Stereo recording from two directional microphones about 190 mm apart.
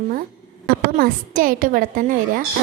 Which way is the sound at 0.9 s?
50° right (ahead or behind).